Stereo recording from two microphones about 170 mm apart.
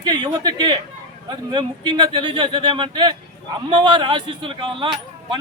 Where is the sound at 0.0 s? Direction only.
25° right (ahead or behind).